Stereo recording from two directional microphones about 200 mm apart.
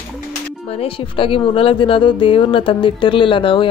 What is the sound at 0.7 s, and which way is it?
Speech, 30° left (ahead or behind).